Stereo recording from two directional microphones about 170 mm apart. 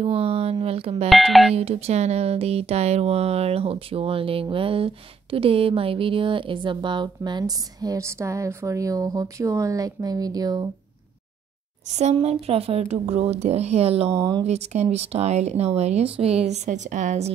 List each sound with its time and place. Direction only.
0.0 s speech: 35° right (ahead or behind)
1.0 s speech: centre (ahead or behind)
1.5 s speech: 35° right (ahead or behind)
11.9 s speech: 40° right (ahead or behind)
14.1 s speech: 25° right (ahead or behind)
14.4 s speech: 40° right (ahead or behind)